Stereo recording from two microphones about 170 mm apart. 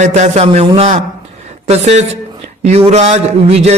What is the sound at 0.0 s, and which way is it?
A man's voice, 45° right (ahead or behind).